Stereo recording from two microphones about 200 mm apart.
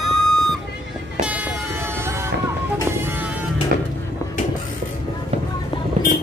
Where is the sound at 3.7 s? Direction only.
45° right (ahead or behind).